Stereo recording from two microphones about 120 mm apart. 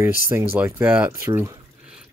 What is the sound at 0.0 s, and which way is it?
Speech, 20° right (ahead or behind).